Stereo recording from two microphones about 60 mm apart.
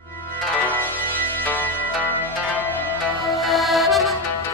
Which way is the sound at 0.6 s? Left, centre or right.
Left.